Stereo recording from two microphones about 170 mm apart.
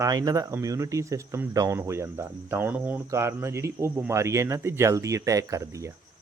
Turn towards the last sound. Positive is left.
turn(degrees=-20)  # may be behind; listen again after turning